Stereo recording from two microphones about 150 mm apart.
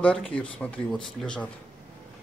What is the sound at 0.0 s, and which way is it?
Speech, 5° left (ahead or behind).